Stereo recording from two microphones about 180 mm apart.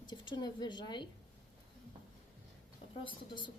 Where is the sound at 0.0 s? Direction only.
25° left (ahead or behind).